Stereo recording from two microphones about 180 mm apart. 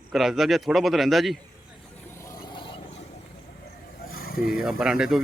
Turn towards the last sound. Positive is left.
turn(degrees=0)  # may be behind; listen again after turning